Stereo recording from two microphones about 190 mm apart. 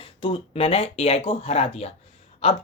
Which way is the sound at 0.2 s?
30° left (ahead or behind).